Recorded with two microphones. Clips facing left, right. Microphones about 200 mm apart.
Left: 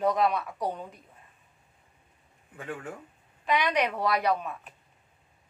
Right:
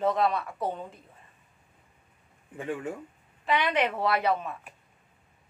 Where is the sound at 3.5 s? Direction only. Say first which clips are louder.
Even; centre (ahead or behind).